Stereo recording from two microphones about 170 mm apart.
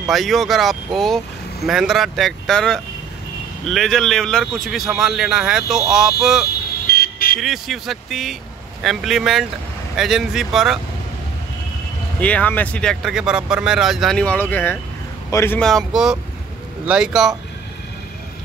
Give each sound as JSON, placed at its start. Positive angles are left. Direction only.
{"t": 0.1, "sound": "speech", "side_deg": 0}
{"t": 6.9, "sound": "vehicle", "side_deg": 60}
{"t": 7.3, "sound": "speech", "side_deg": 0}
{"t": 12.2, "sound": "speech", "side_deg": 10}
{"t": 13.0, "sound": "speech", "side_deg": -5}
{"t": 15.6, "sound": "speech", "side_deg": 0}